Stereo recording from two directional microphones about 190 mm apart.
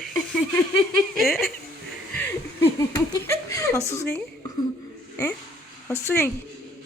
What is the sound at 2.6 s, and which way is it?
Laughter, 15° left (ahead or behind).